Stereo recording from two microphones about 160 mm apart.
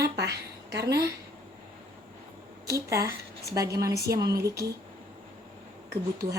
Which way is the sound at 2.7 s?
20° right (ahead or behind).